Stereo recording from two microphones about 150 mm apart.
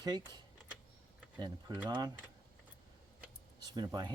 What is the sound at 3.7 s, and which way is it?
Speech, 25° right (ahead or behind).